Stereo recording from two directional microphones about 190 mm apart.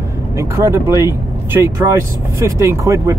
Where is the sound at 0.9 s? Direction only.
20° left (ahead or behind).